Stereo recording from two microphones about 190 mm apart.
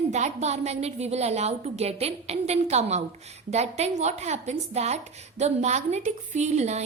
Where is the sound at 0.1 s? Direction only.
35° right (ahead or behind).